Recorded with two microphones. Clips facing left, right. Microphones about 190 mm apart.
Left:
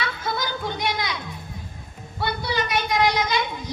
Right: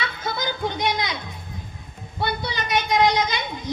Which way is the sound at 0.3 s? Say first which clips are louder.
Right 2 dB; 20° right (ahead or behind).